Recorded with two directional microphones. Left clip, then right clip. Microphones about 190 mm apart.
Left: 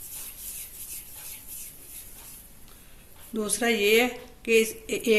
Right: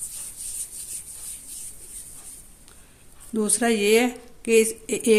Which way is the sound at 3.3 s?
55° right (ahead or behind).